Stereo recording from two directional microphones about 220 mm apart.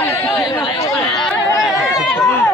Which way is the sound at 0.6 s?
20° left (ahead or behind).